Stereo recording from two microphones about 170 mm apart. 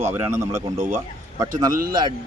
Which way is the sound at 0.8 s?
45° right (ahead or behind).